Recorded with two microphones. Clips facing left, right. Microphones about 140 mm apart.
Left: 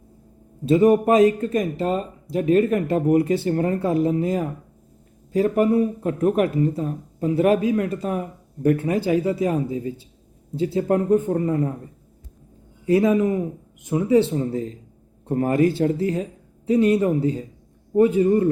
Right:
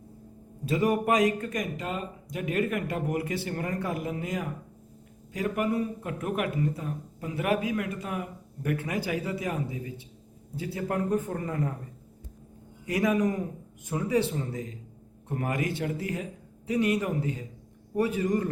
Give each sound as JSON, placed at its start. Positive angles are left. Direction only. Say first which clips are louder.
{"t": 0.6, "sound": "speech", "louder": "left 10 dB", "side_deg": 25}
{"t": 12.8, "sound": "a man's voice", "louder": "left 8 dB", "side_deg": 30}